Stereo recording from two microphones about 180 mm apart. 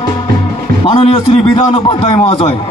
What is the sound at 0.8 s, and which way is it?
A man's voice, 30° left (ahead or behind).